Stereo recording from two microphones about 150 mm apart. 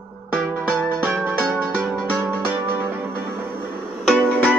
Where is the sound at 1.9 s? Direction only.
15° right (ahead or behind).